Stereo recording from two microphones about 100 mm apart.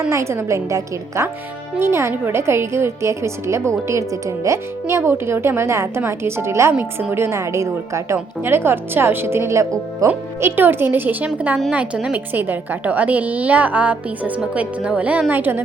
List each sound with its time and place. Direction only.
0.1 s a woman's voice: 30° right (ahead or behind)